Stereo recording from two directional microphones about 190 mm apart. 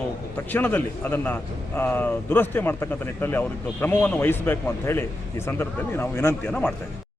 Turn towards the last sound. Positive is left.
turn(degrees=10)  # may be behind; listen again after turning